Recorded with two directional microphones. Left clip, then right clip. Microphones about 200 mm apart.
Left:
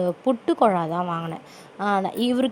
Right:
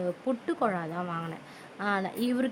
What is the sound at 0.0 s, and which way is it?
Speech, 25° left (ahead or behind).